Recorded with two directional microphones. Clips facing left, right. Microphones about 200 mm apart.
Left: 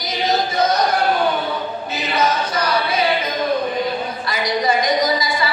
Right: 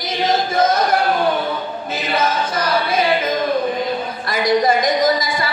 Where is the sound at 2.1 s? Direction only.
50° right (ahead or behind).